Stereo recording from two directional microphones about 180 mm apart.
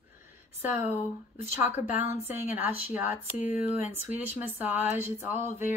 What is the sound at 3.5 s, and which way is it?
Speech, 40° left (ahead or behind).